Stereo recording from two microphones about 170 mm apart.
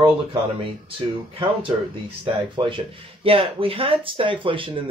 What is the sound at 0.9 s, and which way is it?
Speech, 30° right (ahead or behind).